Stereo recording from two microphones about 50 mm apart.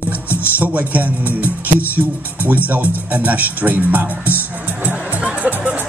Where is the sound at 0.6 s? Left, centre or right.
Right.